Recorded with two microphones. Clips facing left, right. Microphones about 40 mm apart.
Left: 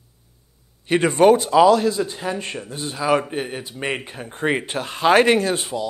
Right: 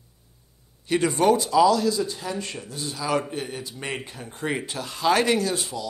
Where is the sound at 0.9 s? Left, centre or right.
Left.